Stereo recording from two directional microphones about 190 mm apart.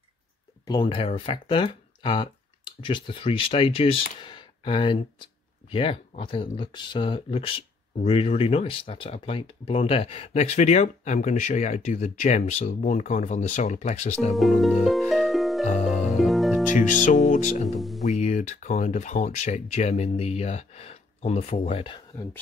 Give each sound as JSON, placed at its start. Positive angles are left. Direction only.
{"t": 0.7, "sound": "speech", "side_deg": 25}
{"t": 14.3, "sound": "music", "side_deg": 0}
{"t": 15.8, "sound": "harp", "side_deg": 0}
{"t": 16.7, "sound": "speech", "side_deg": 40}
{"t": 17.7, "sound": "music", "side_deg": 0}
{"t": 18.2, "sound": "speech", "side_deg": 40}